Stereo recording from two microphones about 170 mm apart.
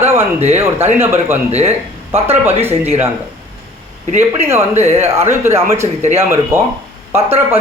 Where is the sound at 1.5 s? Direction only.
40° right (ahead or behind).